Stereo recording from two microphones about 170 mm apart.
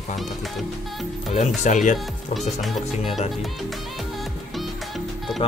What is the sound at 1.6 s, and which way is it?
Speech, 45° left (ahead or behind).